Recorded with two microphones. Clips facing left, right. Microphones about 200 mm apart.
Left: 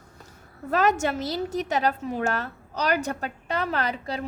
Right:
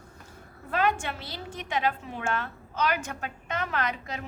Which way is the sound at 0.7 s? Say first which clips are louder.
Left 5 dB; 40° left (ahead or behind).